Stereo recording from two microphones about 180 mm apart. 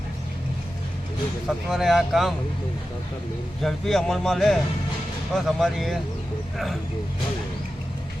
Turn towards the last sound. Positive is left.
turn(degrees=0)  # may be behind; listen again after turning